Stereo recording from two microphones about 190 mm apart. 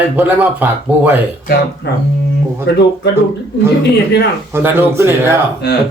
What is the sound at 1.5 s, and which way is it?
Speech, 55° left (ahead or behind).